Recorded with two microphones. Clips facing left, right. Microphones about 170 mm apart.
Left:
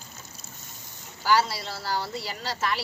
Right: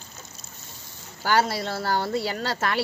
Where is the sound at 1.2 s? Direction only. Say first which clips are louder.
Right 1 dB; 55° right (ahead or behind).